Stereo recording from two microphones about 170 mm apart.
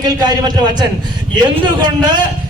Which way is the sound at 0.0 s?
25° right (ahead or behind).